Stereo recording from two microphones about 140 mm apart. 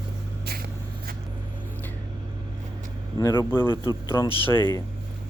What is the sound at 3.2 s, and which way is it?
Speech, 30° left (ahead or behind).